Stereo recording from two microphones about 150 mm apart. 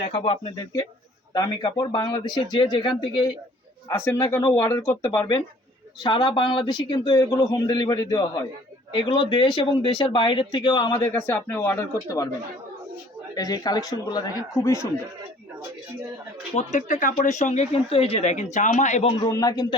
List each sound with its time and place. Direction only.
0.0 s speech: 35° left (ahead or behind)
0.5 s speech: 25° left (ahead or behind)
3.8 s speech: 15° left (ahead or behind)
6.0 s speech: 30° left (ahead or behind)
11.0 s speech: 15° left (ahead or behind)
13.3 s speech: 25° left (ahead or behind)
16.6 s speech: 55° left (ahead or behind)
19.2 s speech: 25° left (ahead or behind)